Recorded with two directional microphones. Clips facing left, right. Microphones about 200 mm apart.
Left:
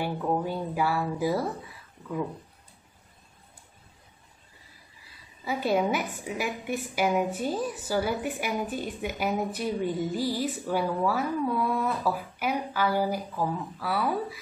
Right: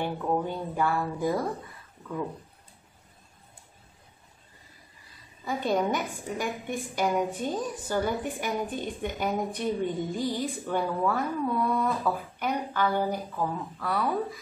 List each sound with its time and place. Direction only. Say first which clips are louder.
0.0 s a woman's voice: even; 5° left (ahead or behind)
5.4 s a woman's voice: left 1 dB; 5° left (ahead or behind)